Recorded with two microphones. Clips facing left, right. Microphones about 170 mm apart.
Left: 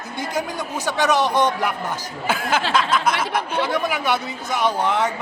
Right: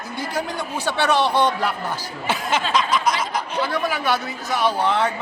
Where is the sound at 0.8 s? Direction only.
15° left (ahead or behind).